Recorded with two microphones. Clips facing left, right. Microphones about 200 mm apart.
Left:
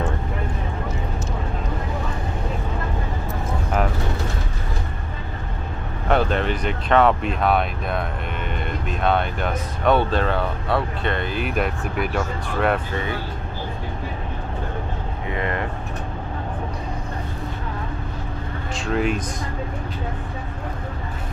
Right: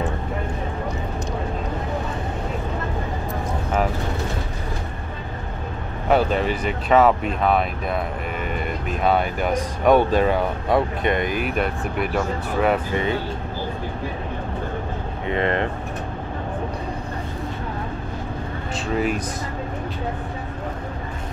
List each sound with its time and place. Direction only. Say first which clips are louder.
6.0 s speech: right 1 dB; 5° right (ahead or behind)
9.0 s speech: right 2 dB; 5° right (ahead or behind)
11.4 s speech: even; centre (ahead or behind)
15.3 s speech: right 5 dB; 30° right (ahead or behind)
18.9 s speech: left 1 dB; 5° right (ahead or behind)